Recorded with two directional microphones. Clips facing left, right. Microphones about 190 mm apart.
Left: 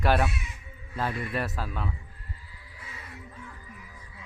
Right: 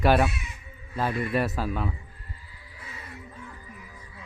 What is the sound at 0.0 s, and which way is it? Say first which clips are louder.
Speech: right 4 dB; 10° right (ahead or behind).